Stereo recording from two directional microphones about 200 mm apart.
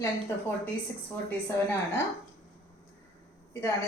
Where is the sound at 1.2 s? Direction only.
10° left (ahead or behind).